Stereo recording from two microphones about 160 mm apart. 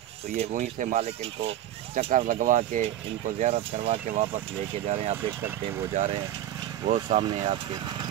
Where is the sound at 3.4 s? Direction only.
40° right (ahead or behind).